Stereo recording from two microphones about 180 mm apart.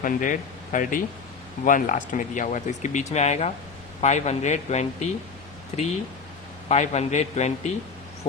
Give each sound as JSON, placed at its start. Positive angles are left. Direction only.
{"t": 0.0, "sound": "speech", "side_deg": 45}